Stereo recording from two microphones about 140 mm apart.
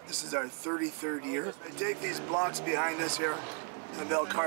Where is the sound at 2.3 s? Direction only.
20° right (ahead or behind).